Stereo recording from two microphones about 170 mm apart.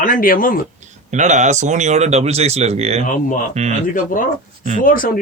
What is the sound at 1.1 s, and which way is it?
Speech, 45° right (ahead or behind).